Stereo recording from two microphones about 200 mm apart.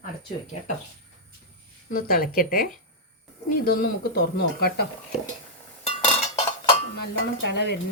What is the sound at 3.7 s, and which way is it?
Speech, 50° left (ahead or behind).